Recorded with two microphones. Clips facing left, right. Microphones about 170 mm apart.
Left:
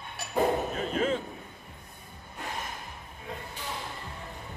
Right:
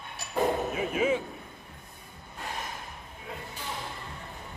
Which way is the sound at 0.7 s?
10° right (ahead or behind).